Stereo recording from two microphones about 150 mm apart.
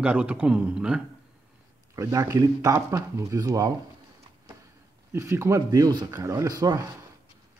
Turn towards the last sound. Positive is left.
turn(degrees=-25)  # may be behind; listen again after turning